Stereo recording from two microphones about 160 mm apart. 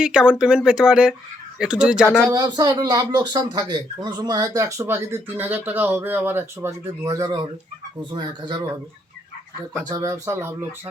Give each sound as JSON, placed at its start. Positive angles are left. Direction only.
{"t": 0.0, "sound": "speech", "side_deg": -5}
{"t": 2.3, "sound": "speech", "side_deg": -25}
{"t": 9.9, "sound": "speech", "side_deg": -20}